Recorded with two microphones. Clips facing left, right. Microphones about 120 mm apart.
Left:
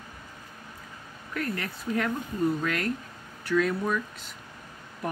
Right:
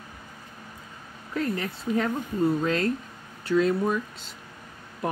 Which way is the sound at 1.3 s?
25° right (ahead or behind).